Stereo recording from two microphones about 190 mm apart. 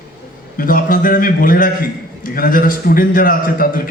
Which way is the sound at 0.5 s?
45° left (ahead or behind).